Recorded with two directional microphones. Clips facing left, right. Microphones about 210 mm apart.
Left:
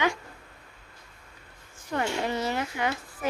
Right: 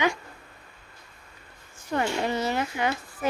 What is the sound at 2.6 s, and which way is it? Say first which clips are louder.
Speech: right 2 dB; 25° right (ahead or behind).